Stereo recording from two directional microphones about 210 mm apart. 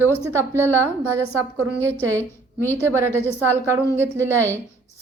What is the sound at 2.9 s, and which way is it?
A woman's voice, 10° right (ahead or behind).